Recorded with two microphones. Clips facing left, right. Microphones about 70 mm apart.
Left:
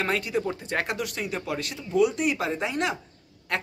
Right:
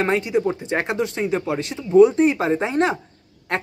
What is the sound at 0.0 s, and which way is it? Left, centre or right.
A woman's voice, right.